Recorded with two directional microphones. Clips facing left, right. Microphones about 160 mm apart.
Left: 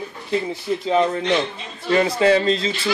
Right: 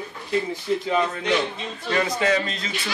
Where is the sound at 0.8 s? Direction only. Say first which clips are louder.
Left 7 dB; 25° left (ahead or behind).